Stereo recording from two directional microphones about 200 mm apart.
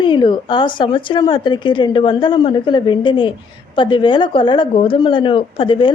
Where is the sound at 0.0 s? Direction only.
25° left (ahead or behind).